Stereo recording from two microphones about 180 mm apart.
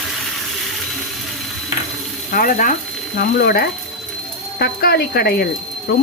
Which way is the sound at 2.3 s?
50° left (ahead or behind).